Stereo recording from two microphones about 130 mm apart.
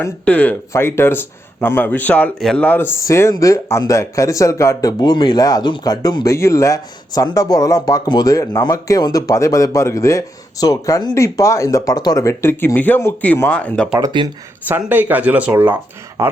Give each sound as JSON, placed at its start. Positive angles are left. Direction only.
{"t": 0.3, "sound": "speech", "side_deg": 10}
{"t": 14.1, "sound": "speech", "side_deg": -35}
{"t": 14.7, "sound": "speech", "side_deg": -15}